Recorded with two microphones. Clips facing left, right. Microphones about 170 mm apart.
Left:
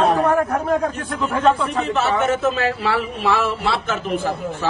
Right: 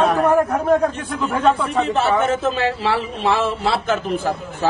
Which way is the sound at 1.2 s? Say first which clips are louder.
Even; 25° right (ahead or behind).